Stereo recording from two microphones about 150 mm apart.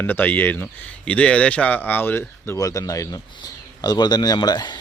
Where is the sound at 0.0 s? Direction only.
15° left (ahead or behind).